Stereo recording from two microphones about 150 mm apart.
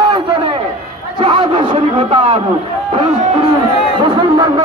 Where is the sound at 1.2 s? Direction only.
30° right (ahead or behind).